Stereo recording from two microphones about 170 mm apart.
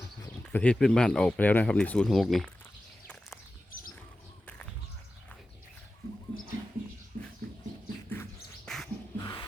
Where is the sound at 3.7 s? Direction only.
55° left (ahead or behind).